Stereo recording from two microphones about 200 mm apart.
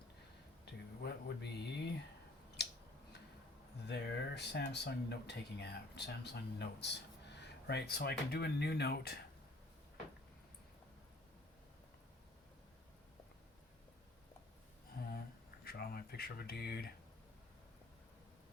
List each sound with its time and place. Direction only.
0.6 s speech: 55° left (ahead or behind)
3.8 s speech: 60° left (ahead or behind)
14.9 s a sound: 50° left (ahead or behind)
15.6 s speech: 50° left (ahead or behind)